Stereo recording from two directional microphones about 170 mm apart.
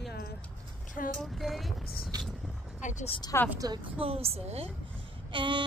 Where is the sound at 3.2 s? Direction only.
20° left (ahead or behind).